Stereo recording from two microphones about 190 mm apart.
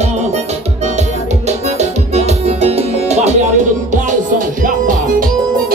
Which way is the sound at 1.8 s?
35° right (ahead or behind).